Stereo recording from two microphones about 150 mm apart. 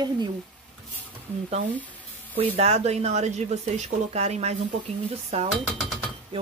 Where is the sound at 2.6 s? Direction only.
45° right (ahead or behind).